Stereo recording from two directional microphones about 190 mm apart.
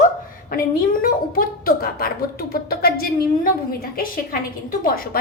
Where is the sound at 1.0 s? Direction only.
50° left (ahead or behind).